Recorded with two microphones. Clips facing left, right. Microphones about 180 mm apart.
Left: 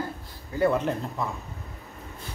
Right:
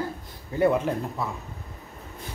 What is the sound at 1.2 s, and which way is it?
Speech, 5° right (ahead or behind).